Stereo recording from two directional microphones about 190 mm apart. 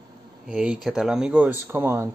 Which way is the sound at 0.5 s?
5° right (ahead or behind).